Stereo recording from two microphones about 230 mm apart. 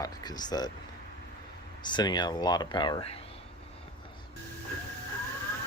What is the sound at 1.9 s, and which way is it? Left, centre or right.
Speech, centre.